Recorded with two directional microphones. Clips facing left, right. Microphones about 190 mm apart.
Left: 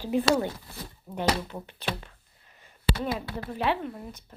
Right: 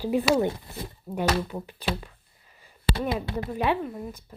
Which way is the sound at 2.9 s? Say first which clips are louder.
Right 2 dB; 25° right (ahead or behind).